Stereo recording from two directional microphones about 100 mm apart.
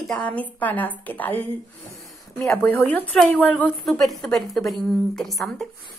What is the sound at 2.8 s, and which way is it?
Speech, 15° left (ahead or behind).